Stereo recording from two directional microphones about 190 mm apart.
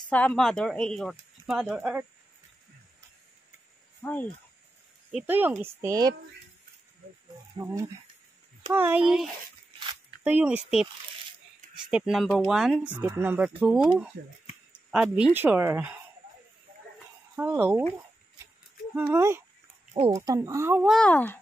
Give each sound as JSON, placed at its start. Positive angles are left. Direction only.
{"t": 0.1, "sound": "speech", "side_deg": 5}
{"t": 4.0, "sound": "speech", "side_deg": 10}
{"t": 5.1, "sound": "speech", "side_deg": -10}
{"t": 7.5, "sound": "speech", "side_deg": -15}
{"t": 11.9, "sound": "speech", "side_deg": 0}
{"t": 14.9, "sound": "speech", "side_deg": -5}
{"t": 17.4, "sound": "speech", "side_deg": -10}
{"t": 18.9, "sound": "speech", "side_deg": -15}
{"t": 20.9, "sound": "speech", "side_deg": 5}